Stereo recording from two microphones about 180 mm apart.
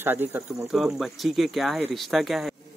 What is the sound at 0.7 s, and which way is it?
Speech, centre (ahead or behind).